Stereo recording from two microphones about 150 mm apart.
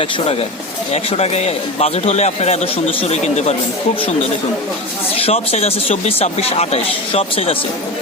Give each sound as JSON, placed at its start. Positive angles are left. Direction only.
{"t": 0.9, "sound": "speech", "side_deg": 45}
{"t": 5.1, "sound": "speech", "side_deg": 40}